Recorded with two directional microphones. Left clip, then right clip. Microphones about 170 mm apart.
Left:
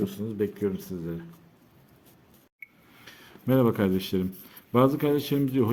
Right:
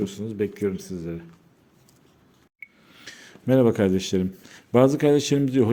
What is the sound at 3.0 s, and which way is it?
Speech, 30° right (ahead or behind).